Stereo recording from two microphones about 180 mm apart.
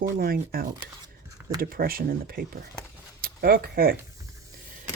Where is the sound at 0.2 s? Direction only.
55° right (ahead or behind).